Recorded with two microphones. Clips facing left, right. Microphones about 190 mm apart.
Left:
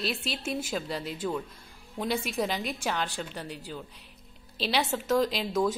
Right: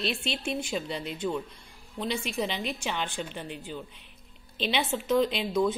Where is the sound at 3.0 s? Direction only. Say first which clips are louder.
Even; 40° left (ahead or behind).